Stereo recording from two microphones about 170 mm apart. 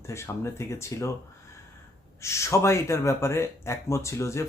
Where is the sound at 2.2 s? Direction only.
15° left (ahead or behind).